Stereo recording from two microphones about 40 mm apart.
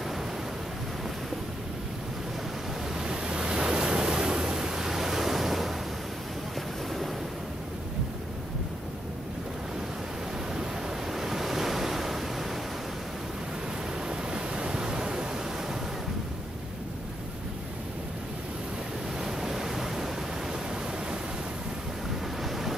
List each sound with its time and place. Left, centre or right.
2.9 s waves: centre
10.5 s waves: centre
14.0 s waves: right
19.1 s waves: centre
22.4 s waves: centre